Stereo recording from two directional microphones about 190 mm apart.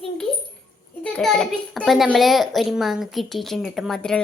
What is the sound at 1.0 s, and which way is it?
A child's voice, 5° left (ahead or behind).